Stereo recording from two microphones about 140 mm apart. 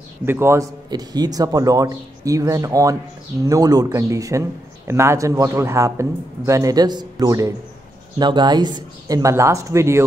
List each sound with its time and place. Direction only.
0.2 s a man's voice: 15° right (ahead or behind)
0.8 s speech: 30° right (ahead or behind)